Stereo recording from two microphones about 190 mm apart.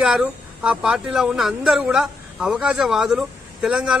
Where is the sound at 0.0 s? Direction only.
5° right (ahead or behind).